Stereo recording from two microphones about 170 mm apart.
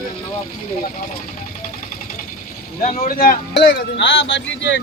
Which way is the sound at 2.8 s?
50° left (ahead or behind).